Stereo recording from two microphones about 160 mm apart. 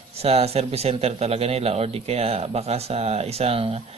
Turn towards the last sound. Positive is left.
turn(degrees=-35)  # may be behind; listen again after turning